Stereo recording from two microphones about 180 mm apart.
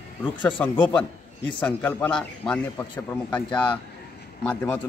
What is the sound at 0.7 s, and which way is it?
A man's voice, 10° left (ahead or behind).